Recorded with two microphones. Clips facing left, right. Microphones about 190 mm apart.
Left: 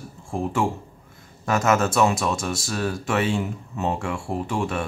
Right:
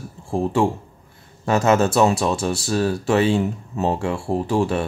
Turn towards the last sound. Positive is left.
turn(degrees=-35)  # may be behind; listen again after turning